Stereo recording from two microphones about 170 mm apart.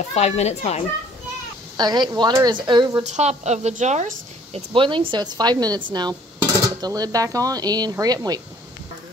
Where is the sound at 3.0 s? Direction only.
40° right (ahead or behind).